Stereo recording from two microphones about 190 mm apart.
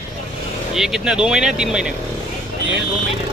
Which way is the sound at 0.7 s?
Centre (ahead or behind).